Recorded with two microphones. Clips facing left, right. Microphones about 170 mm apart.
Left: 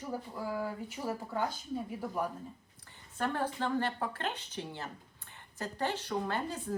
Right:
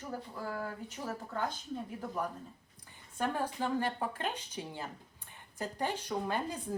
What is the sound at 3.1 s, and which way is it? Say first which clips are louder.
A woman's voice: left 1 dB; 10° right (ahead or behind).